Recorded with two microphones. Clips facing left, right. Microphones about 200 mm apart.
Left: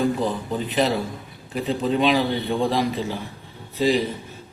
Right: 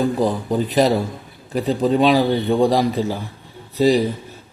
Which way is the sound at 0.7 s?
40° right (ahead or behind).